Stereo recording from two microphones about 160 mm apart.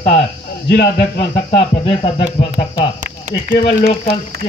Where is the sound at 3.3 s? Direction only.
50° right (ahead or behind).